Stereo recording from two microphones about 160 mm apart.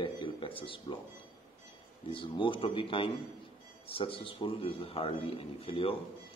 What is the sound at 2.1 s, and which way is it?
A man's voice, 30° left (ahead or behind).